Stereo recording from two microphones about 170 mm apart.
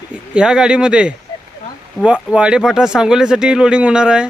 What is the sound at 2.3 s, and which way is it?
Speech, 5° right (ahead or behind).